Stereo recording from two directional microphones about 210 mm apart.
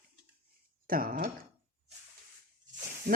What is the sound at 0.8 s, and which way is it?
Speech, 45° right (ahead or behind).